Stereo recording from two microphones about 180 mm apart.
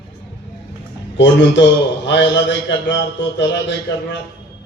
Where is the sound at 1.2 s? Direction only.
85° left.